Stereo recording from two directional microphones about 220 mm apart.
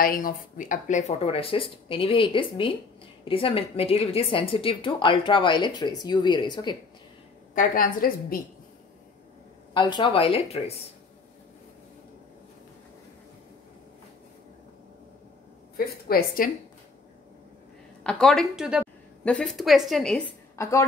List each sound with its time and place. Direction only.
0.0 s a woman's voice: 40° left (ahead or behind); by 6.8 s 20° left (ahead or behind)
7.5 s a woman's voice: 40° left (ahead or behind)
9.8 s a woman's voice: 20° left (ahead or behind)
15.8 s a woman's voice: 40° left (ahead or behind)
18.0 s a woman's voice: centre (ahead or behind)
20.5 s a woman's voice: 15° left (ahead or behind)